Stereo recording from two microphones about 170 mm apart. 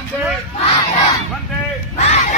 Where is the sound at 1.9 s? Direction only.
40° left (ahead or behind).